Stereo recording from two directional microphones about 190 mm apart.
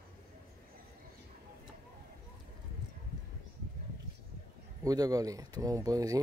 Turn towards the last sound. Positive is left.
turn(degrees=-20)  # may be behind; listen again after turning